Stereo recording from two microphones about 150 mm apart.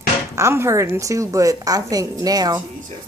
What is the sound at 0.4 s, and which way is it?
A woman's voice, 20° right (ahead or behind).